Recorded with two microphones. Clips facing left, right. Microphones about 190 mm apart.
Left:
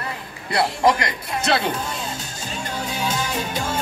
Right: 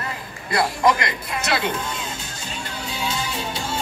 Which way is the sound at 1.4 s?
30° left (ahead or behind).